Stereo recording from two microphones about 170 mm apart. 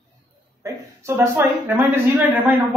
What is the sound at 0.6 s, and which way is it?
A woman's voice, 15° right (ahead or behind).